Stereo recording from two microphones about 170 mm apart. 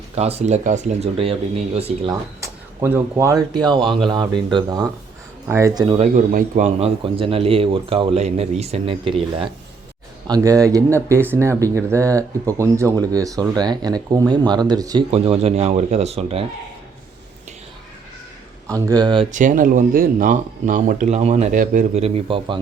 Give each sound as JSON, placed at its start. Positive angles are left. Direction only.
{"t": 0.2, "sound": "speech", "side_deg": -40}
{"t": 2.0, "sound": "speech", "side_deg": -15}
{"t": 6.0, "sound": "speech", "side_deg": -45}
{"t": 10.2, "sound": "speech", "side_deg": -20}
{"t": 15.1, "sound": "speech", "side_deg": -35}
{"t": 18.7, "sound": "speech", "side_deg": -20}
{"t": 19.3, "sound": "speech", "side_deg": -50}